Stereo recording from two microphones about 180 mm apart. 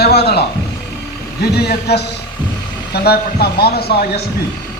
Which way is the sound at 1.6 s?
65° left (ahead or behind).